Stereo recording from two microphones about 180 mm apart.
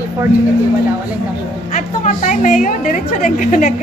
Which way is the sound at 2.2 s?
45° left (ahead or behind).